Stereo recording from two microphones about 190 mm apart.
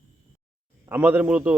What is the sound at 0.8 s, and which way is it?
Speech, 10° right (ahead or behind).